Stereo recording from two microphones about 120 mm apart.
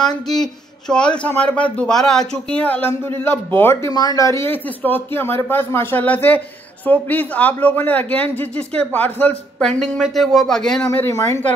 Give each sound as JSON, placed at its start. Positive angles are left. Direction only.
{"t": 0.0, "sound": "speech", "side_deg": 5}
{"t": 3.9, "sound": "a woman's voice", "side_deg": 30}
{"t": 10.8, "sound": "speech", "side_deg": 20}